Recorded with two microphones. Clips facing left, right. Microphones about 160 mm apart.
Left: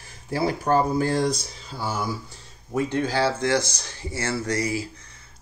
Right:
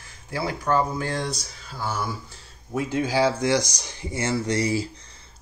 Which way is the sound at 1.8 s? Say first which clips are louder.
Left 1 dB; 5° left (ahead or behind).